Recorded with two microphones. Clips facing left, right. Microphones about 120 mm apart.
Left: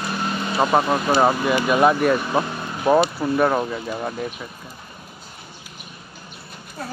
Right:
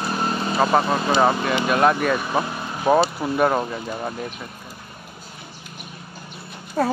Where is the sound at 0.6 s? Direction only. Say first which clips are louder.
Left 1 dB; 5° left (ahead or behind).